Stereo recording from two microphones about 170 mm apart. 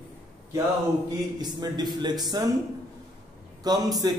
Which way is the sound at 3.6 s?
25° right (ahead or behind).